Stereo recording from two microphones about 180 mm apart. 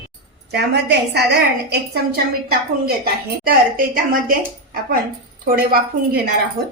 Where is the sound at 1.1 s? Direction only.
60° right (ahead or behind).